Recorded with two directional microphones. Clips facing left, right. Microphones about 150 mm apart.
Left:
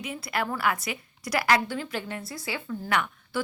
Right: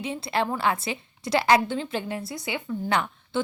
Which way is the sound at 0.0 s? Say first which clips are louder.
Right 4 dB; 25° right (ahead or behind).